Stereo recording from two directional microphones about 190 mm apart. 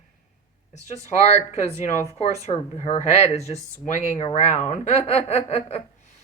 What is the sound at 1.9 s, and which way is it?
Speech, 35° left (ahead or behind).